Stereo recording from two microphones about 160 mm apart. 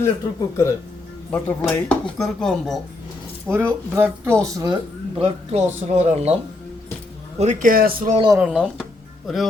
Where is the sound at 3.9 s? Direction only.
15° right (ahead or behind).